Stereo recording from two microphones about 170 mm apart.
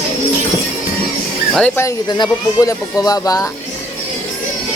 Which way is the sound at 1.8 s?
25° left (ahead or behind).